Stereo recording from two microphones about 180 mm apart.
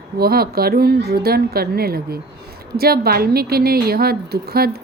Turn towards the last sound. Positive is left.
turn(degrees=-60)  # may be behind; listen again after turning